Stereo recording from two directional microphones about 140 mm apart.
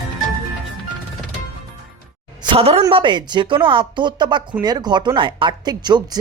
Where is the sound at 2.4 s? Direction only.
45° right (ahead or behind).